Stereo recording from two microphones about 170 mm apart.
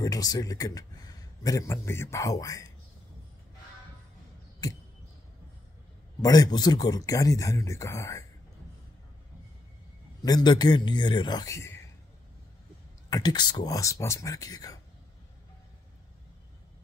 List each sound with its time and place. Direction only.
0.0 s speech: 20° left (ahead or behind)
4.6 s speech: 20° left (ahead or behind)
6.2 s speech: 20° left (ahead or behind)
10.2 s speech: 25° left (ahead or behind)
13.1 s speech: 25° left (ahead or behind)